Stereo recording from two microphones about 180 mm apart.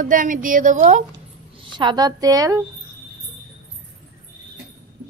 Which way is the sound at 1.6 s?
25° right (ahead or behind).